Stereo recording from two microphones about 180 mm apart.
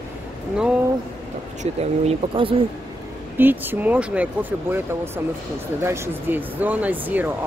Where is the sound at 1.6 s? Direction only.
35° right (ahead or behind).